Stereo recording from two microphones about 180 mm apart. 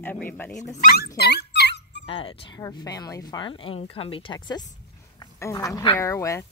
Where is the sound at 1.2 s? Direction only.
65° left (ahead or behind).